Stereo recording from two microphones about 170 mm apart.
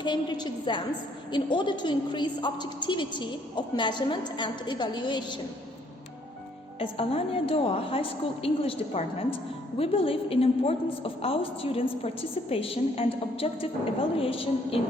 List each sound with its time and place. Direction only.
0.0 s a woman's voice: 25° left (ahead or behind)
6.7 s a woman's voice: 35° left (ahead or behind)